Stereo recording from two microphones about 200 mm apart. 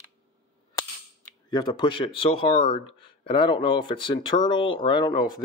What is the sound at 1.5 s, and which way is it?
Speech, 20° left (ahead or behind).